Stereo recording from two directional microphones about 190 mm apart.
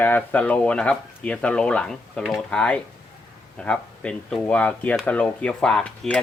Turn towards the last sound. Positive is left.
turn(degrees=5)  # may be behind; listen again after turning